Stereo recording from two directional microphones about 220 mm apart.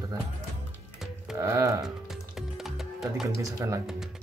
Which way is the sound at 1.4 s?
15° right (ahead or behind).